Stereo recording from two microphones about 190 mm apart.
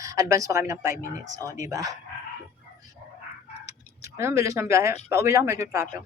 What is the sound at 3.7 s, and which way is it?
Tick-tock, 15° right (ahead or behind).